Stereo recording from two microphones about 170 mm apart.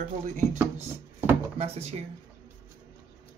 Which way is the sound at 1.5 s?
35° right (ahead or behind).